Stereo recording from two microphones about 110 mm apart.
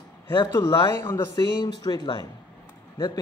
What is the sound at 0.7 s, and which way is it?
Speech, 40° left (ahead or behind).